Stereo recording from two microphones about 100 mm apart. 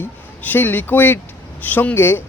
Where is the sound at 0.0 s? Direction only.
20° left (ahead or behind).